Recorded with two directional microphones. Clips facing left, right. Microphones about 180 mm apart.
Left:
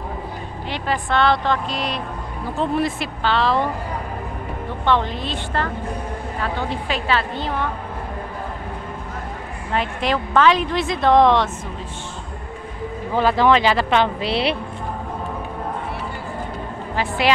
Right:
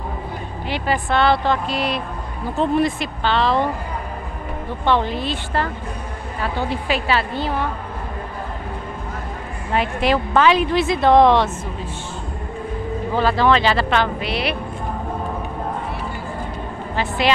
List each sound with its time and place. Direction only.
0.7 s a woman's voice: 5° right (ahead or behind)
4.8 s a woman's voice: 5° right (ahead or behind)
9.7 s a woman's voice: 5° right (ahead or behind)
13.1 s a woman's voice: 15° left (ahead or behind)
16.9 s speech: 10° left (ahead or behind)